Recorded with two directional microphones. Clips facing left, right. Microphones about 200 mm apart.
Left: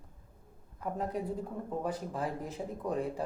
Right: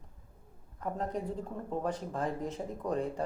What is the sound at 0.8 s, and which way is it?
Speech, 5° left (ahead or behind).